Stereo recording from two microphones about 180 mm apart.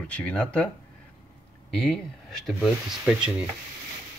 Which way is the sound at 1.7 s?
5° left (ahead or behind).